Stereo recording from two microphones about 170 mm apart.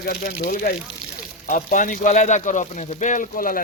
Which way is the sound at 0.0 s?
60° left (ahead or behind).